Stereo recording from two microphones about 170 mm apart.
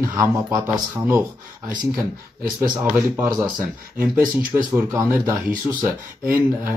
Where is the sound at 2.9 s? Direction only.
15° right (ahead or behind).